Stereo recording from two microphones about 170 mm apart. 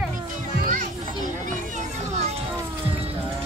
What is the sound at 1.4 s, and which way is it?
Children playing, 45° right (ahead or behind).